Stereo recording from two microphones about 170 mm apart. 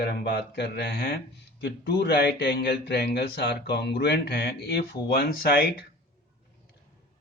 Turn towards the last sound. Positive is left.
turn(degrees=65)  # may be behind; listen again after turning